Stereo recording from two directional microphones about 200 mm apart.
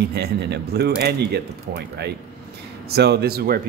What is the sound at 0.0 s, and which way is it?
Speech, 55° right (ahead or behind).